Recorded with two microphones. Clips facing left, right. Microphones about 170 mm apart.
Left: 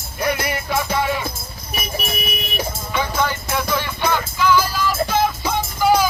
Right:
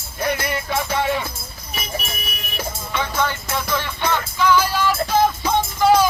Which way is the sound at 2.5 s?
10° left (ahead or behind).